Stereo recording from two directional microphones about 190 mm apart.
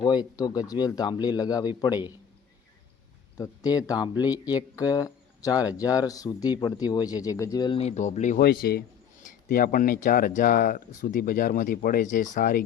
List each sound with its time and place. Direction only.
0.0 s speech: 20° left (ahead or behind)
3.3 s speech: 20° left (ahead or behind); by 8.4 s 40° left (ahead or behind)
8.4 s speech: 55° left (ahead or behind)